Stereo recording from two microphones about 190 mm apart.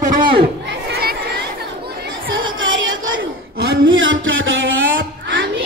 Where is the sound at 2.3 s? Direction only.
85° right.